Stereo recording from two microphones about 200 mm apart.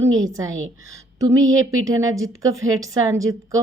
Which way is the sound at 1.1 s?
15° right (ahead or behind).